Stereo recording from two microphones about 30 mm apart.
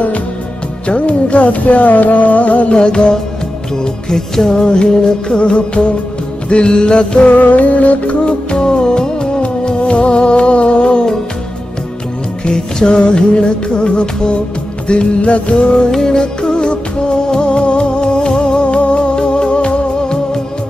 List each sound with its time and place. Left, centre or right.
0.8 s music: left
2.8 s music: left
7.3 s music: left
8.5 s music: left
9.8 s music: left
12.4 s music: left
15.9 s music: centre